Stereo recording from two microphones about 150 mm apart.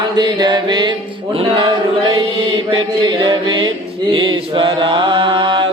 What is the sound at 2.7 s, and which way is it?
Mantra, 30° right (ahead or behind).